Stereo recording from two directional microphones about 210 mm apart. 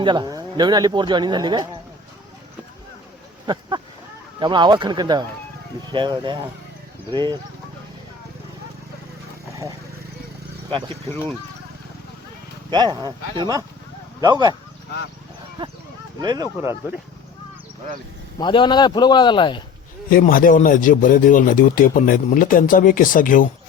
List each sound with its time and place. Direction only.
0.0 s speech: 20° right (ahead or behind)
3.4 s speech: 20° right (ahead or behind)
10.7 s speech: 25° right (ahead or behind)
12.7 s speech: 20° right (ahead or behind)
16.2 s speech: 20° right (ahead or behind)
18.3 s a man's voice: 20° left (ahead or behind)
20.1 s speech: 40° left (ahead or behind)